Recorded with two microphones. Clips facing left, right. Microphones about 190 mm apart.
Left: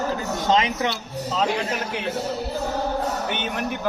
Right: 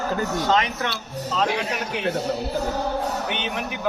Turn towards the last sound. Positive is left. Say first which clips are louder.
# left 1 dB
turn(degrees=0)  # may be behind; listen again after turning